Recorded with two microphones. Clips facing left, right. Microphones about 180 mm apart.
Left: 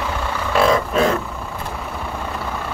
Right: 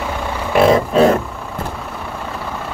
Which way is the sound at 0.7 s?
35° right (ahead or behind).